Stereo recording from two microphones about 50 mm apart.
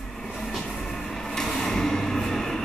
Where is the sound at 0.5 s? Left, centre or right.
Centre.